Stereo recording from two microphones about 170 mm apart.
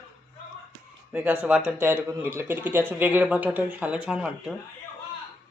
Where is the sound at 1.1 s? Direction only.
10° right (ahead or behind).